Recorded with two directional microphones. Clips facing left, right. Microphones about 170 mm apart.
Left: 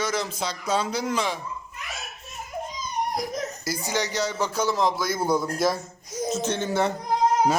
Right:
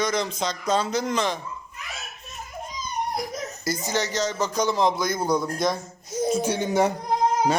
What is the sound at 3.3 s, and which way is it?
Speech, 5° left (ahead or behind).